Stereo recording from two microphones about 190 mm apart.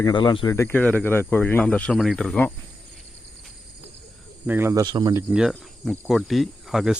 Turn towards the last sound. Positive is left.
turn(degrees=0)  # may be behind; listen again after turning